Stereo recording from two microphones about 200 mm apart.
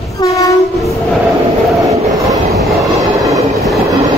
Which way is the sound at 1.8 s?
15° right (ahead or behind).